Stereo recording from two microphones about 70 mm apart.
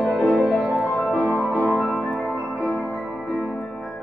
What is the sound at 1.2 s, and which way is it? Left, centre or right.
Music, centre.